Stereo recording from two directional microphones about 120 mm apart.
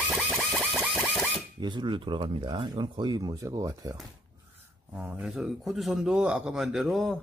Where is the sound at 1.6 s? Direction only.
40° right (ahead or behind).